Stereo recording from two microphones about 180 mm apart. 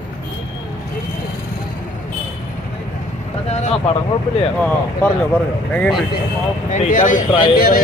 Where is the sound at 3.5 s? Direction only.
35° left (ahead or behind).